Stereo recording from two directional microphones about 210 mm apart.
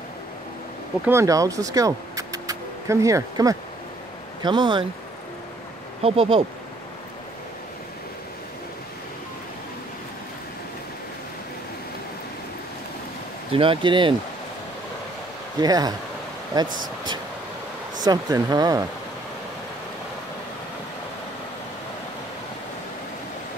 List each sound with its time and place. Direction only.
1.0 s speech: 15° right (ahead or behind)
6.0 s speech: 25° right (ahead or behind)
13.5 s speech: 25° right (ahead or behind)
15.6 s speech: 20° right (ahead or behind)
18.0 s speech: 20° right (ahead or behind)